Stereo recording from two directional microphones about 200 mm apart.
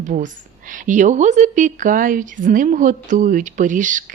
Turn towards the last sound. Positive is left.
turn(degrees=-40)  # may be behind; listen again after turning